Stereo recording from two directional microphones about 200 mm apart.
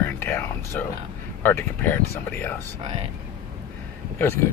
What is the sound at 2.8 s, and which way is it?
Speech, 25° right (ahead or behind).